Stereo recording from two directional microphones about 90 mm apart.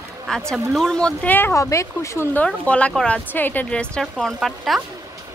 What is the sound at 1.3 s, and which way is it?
Speech, 25° left (ahead or behind).